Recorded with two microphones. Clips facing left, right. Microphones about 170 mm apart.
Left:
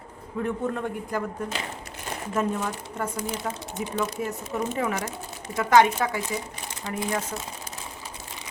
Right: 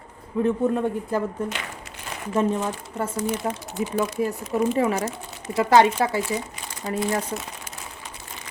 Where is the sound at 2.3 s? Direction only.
25° right (ahead or behind).